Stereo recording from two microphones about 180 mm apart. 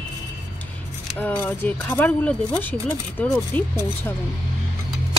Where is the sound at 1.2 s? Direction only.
10° left (ahead or behind).